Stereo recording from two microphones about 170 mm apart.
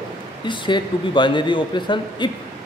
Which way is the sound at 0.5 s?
25° left (ahead or behind).